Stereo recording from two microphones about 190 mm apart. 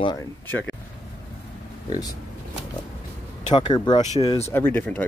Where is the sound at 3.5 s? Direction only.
20° left (ahead or behind).